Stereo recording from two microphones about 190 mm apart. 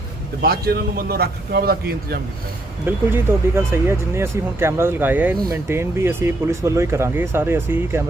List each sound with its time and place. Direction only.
0.4 s speech: 55° right (ahead or behind)
2.8 s speech: 10° right (ahead or behind)